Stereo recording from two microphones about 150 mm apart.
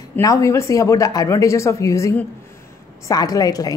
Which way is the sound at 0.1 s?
20° left (ahead or behind).